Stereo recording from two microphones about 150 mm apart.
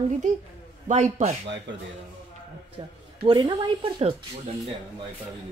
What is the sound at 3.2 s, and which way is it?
Speech, 30° right (ahead or behind).